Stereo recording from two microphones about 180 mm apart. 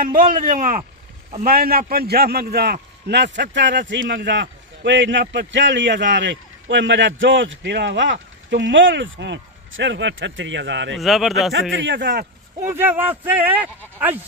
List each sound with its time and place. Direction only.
0.0 s a man's voice: 50° right (ahead or behind); by 11.0 s 80° right
11.0 s speech: centre (ahead or behind)
11.7 s a man's voice: 85° right; by 12.3 s 70° right (ahead or behind)
12.6 s speech: 10° right (ahead or behind)